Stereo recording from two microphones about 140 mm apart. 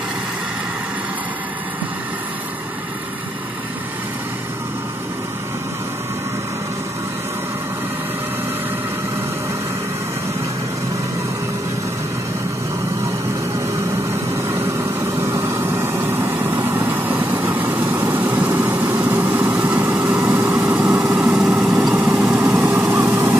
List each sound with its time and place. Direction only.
14.3 s vehicle: 20° right (ahead or behind)